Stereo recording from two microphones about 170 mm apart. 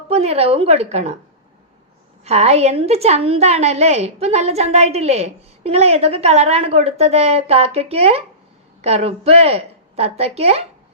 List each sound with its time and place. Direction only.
0.1 s a woman's voice: 35° right (ahead or behind)
2.2 s a woman's voice: 40° right (ahead or behind)